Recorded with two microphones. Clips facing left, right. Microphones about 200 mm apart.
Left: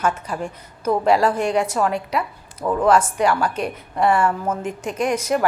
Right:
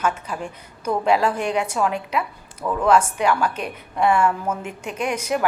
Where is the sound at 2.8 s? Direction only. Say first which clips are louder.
Even; 10° right (ahead or behind).